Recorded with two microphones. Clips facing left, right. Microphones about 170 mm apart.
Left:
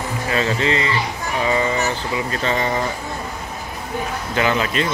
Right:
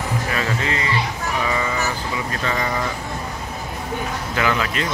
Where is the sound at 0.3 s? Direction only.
30° left (ahead or behind).